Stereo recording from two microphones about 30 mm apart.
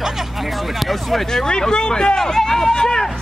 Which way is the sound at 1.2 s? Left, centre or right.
Left.